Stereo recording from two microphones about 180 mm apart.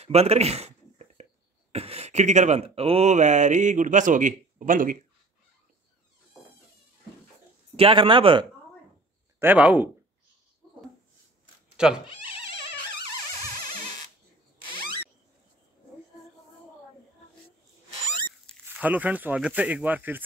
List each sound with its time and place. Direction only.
0.0 s a sound: 35° right (ahead or behind)
1.7 s speech: 35° right (ahead or behind)
7.7 s speech: 30° right (ahead or behind)
9.4 s speech: 10° right (ahead or behind)
11.7 s a sound: 5° right (ahead or behind)
18.7 s speech: 10° right (ahead or behind)